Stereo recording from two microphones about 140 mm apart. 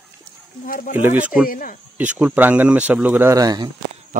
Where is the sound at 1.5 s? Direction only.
80° left.